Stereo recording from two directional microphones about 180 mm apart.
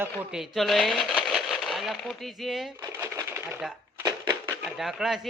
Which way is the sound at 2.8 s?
15° right (ahead or behind).